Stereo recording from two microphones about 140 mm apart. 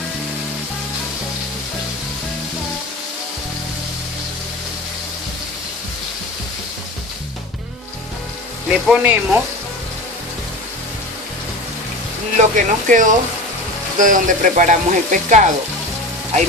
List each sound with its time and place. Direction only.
8.6 s speech: 15° right (ahead or behind)
12.4 s speech: 65° right (ahead or behind)